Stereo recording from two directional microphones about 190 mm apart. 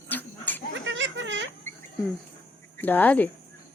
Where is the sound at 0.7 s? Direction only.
75° right (ahead or behind).